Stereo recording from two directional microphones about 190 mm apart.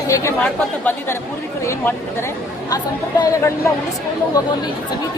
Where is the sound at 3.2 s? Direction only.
15° left (ahead or behind).